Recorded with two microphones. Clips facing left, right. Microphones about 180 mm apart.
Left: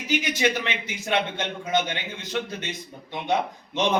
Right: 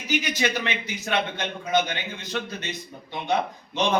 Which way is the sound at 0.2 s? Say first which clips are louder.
Left 2 dB; 20° left (ahead or behind).